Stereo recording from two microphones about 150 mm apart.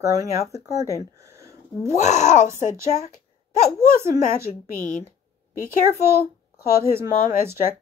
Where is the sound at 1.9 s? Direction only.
50° left (ahead or behind).